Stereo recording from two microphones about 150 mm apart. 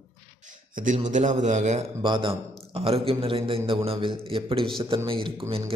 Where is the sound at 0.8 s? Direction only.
55° right (ahead or behind).